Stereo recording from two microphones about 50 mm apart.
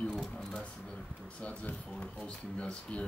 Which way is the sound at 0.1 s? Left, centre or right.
Centre.